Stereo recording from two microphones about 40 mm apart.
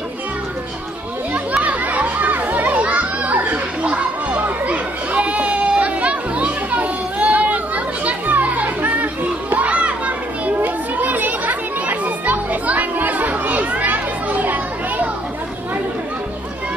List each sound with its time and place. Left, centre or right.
1.6 s children playing: right
2.8 s children playing: right
3.4 s a sound: right
4.6 s children playing: right
10.6 s children playing: right